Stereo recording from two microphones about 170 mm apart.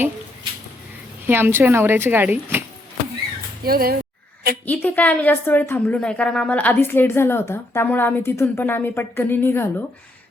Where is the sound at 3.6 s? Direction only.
60° right (ahead or behind).